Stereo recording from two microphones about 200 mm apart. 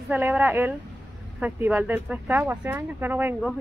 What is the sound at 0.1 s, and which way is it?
A woman's voice, 10° right (ahead or behind).